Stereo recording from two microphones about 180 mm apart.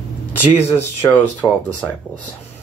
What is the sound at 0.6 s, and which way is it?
Speech, 35° left (ahead or behind).